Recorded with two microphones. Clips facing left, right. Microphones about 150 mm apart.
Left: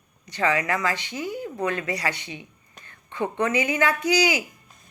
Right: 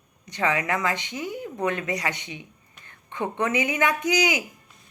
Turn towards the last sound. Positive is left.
turn(degrees=-20)  # may be behind; listen again after turning